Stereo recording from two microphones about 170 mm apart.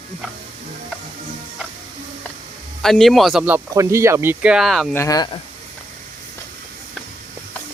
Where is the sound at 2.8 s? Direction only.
Centre (ahead or behind).